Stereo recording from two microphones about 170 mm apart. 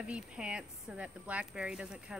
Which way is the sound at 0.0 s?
5° right (ahead or behind).